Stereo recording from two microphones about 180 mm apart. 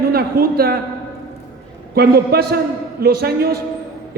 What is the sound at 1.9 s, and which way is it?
A man's voice, 60° right (ahead or behind).